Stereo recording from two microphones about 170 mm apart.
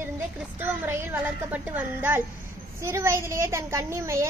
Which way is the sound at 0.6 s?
10° right (ahead or behind).